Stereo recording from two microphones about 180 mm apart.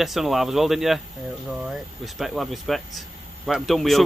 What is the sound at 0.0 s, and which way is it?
Speech, centre (ahead or behind).